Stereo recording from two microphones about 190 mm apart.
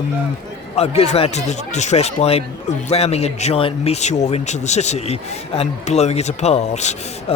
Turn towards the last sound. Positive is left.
turn(degrees=35)  # may be behind; listen again after turning